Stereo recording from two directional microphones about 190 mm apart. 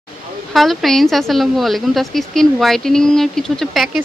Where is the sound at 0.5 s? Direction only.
Centre (ahead or behind).